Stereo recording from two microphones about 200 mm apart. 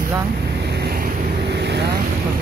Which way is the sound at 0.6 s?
50° right (ahead or behind).